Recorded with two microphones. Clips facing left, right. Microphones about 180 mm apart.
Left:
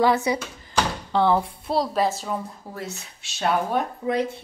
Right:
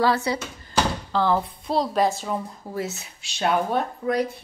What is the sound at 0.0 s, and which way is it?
Speech, 20° left (ahead or behind).